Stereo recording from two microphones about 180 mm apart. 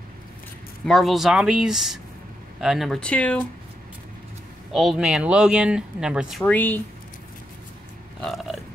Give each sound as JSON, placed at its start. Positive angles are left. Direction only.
{"t": 0.8, "sound": "speech", "side_deg": 0}
{"t": 4.7, "sound": "speech", "side_deg": 0}
{"t": 8.2, "sound": "speech", "side_deg": 0}